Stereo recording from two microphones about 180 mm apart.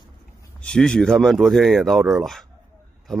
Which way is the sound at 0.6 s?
5° left (ahead or behind).